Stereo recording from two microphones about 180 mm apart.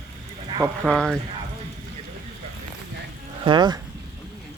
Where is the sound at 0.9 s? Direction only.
5° left (ahead or behind).